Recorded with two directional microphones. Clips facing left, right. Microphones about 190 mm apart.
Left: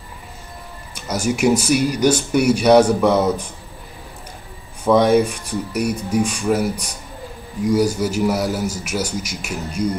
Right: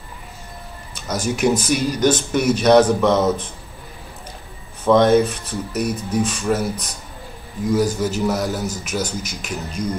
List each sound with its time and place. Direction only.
0.9 s speech: 10° left (ahead or behind)
4.8 s speech: 10° left (ahead or behind)